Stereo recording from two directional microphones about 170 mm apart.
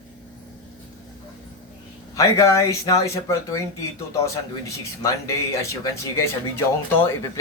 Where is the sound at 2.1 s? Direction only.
20° left (ahead or behind).